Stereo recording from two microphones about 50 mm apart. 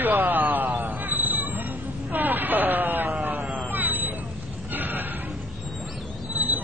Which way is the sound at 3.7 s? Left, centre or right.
Right.